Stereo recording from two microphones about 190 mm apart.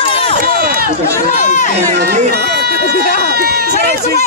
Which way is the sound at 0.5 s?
50° right (ahead or behind).